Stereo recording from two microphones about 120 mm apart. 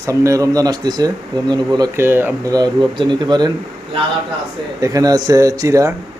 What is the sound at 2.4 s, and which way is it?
Speech, 35° right (ahead or behind).